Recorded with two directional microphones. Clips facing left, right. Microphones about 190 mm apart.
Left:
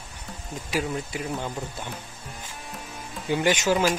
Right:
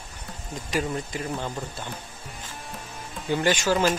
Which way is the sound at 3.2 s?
5° left (ahead or behind).